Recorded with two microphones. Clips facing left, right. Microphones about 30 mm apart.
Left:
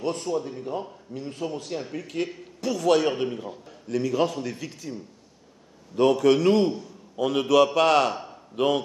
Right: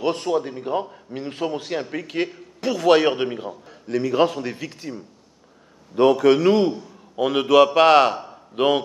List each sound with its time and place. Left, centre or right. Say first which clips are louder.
0.0 s a man's voice: right 5 dB; right
5.9 s a man's voice: right 4 dB; right
7.2 s a man's voice: right 4 dB; right